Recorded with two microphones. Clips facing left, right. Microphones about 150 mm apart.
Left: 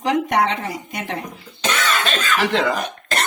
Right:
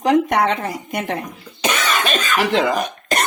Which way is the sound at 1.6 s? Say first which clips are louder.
Right 1 dB; 15° right (ahead or behind).